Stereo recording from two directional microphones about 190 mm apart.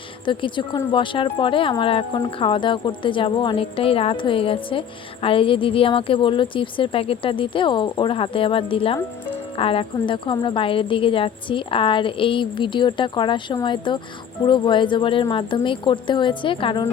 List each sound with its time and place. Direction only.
0.3 s speech: 25° left (ahead or behind)